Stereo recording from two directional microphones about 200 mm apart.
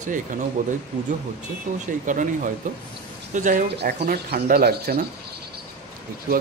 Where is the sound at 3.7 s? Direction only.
50° right (ahead or behind).